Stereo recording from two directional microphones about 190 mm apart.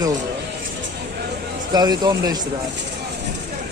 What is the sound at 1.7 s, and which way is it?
Speech, 20° right (ahead or behind).